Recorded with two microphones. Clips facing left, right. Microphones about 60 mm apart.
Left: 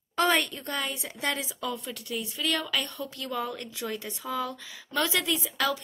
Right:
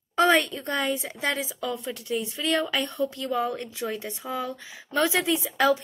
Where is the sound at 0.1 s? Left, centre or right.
Right.